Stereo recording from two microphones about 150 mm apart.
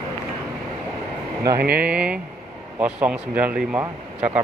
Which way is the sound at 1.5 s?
80° right.